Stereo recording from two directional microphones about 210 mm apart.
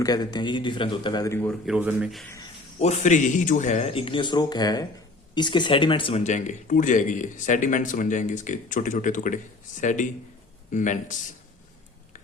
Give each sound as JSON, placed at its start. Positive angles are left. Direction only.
{"t": 0.0, "sound": "speech", "side_deg": 20}
{"t": 1.5, "sound": "speech", "side_deg": 0}
{"t": 2.8, "sound": "speech", "side_deg": 35}